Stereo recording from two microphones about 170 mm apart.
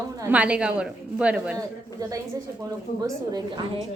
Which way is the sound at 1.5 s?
20° right (ahead or behind).